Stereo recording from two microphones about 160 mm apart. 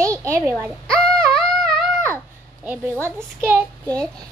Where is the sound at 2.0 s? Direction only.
15° right (ahead or behind).